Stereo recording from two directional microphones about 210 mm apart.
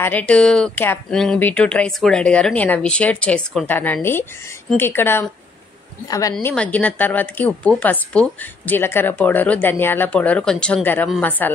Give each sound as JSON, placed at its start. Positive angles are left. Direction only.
{"t": 0.0, "sound": "speech", "side_deg": 5}
{"t": 6.3, "sound": "speech", "side_deg": 5}